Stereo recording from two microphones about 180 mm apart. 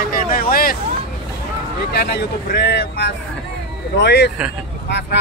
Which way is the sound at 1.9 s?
65° left (ahead or behind).